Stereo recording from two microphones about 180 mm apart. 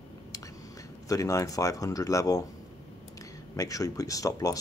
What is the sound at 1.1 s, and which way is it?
Speech, 20° left (ahead or behind).